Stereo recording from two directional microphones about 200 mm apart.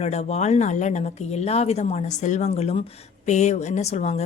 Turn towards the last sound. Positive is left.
turn(degrees=35)  # may be behind; listen again after turning